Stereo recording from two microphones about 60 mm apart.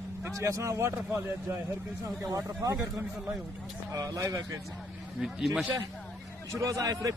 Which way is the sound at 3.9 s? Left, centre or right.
Right.